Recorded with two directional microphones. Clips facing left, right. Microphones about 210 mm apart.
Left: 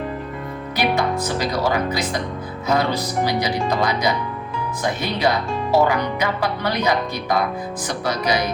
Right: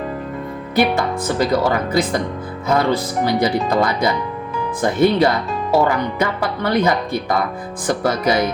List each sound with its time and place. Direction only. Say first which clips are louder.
0.8 s speech: right 3 dB; 50° right (ahead or behind)